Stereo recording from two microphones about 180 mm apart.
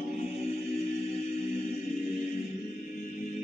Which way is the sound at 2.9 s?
45° left (ahead or behind).